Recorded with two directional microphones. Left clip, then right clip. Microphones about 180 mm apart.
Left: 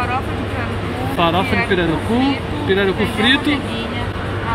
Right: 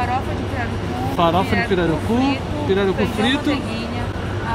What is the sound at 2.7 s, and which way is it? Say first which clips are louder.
Speech: left 2 dB; 5° right (ahead or behind).